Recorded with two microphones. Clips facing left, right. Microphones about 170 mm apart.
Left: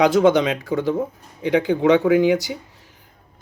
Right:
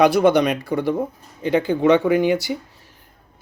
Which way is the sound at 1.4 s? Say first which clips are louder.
Even; 15° left (ahead or behind).